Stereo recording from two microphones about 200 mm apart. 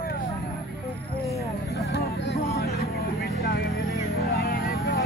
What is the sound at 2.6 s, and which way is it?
Vehicle, 50° left (ahead or behind).